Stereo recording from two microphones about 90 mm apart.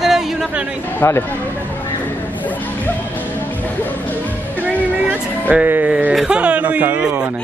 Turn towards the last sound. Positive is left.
turn(degrees=-10)  # may be behind; listen again after turning